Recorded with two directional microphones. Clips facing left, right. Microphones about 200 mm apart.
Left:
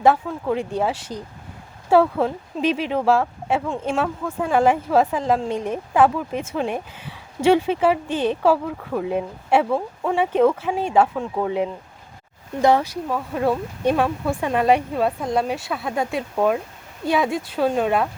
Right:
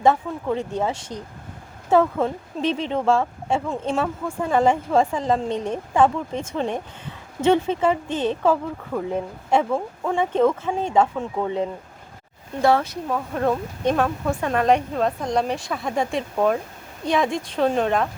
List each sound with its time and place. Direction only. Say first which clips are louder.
0.0 s speech: left 1 dB; 5° left (ahead or behind)
13.1 s speech: even; 5° left (ahead or behind)